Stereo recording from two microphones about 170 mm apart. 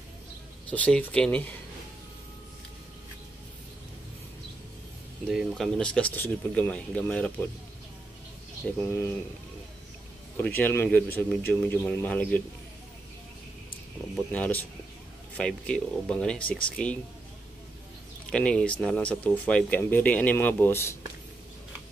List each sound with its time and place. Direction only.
0.7 s speech: 5° left (ahead or behind)
5.2 s speech: centre (ahead or behind)
8.7 s speech: 15° left (ahead or behind)
10.3 s speech: 10° left (ahead or behind)
14.1 s speech: 10° left (ahead or behind)
18.3 s speech: 5° left (ahead or behind)